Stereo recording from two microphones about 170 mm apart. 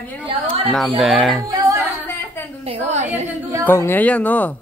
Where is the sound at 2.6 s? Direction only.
40° right (ahead or behind).